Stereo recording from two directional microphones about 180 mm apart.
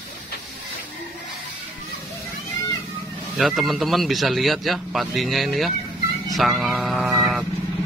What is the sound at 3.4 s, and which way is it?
Speech, centre (ahead or behind).